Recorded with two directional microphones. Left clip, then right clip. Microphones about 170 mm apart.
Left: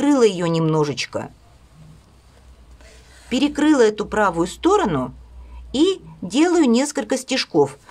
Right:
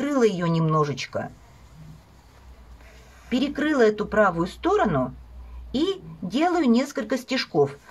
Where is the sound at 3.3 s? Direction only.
35° left (ahead or behind).